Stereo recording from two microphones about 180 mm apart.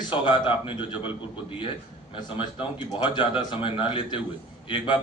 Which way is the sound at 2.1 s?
25° left (ahead or behind).